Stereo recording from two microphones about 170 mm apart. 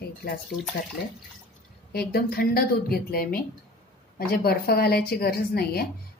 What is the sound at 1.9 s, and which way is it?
A woman's voice, 65° left (ahead or behind).